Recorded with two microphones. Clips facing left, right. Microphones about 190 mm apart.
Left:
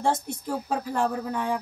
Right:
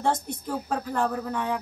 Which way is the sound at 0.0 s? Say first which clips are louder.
Even; 10° left (ahead or behind).